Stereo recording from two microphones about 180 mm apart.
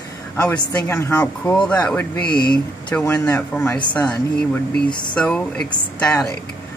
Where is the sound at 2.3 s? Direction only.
25° left (ahead or behind).